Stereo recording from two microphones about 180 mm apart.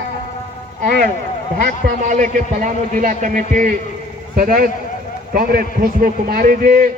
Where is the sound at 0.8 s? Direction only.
50° right (ahead or behind).